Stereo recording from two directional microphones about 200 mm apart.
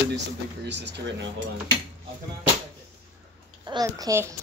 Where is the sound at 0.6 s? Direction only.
60° right (ahead or behind).